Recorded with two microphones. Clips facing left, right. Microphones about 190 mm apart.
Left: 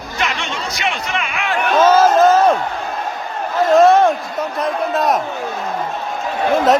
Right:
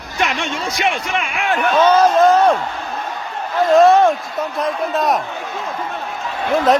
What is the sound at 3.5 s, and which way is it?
A man's voice, centre (ahead or behind).